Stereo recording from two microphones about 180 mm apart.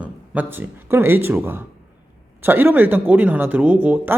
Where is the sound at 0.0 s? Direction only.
10° right (ahead or behind).